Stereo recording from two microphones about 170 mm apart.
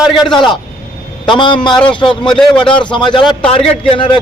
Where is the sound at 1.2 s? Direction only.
30° left (ahead or behind).